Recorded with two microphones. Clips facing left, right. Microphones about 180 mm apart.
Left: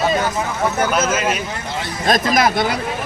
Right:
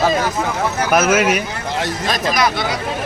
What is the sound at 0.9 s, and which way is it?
Speech, 75° right (ahead or behind).